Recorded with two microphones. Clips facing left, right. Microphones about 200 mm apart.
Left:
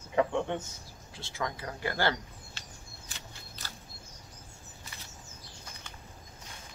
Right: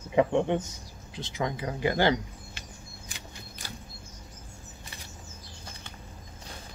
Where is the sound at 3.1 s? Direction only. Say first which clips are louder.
Right 3 dB; 15° right (ahead or behind).